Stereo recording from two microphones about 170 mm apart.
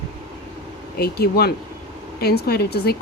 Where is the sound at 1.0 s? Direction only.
70° left (ahead or behind).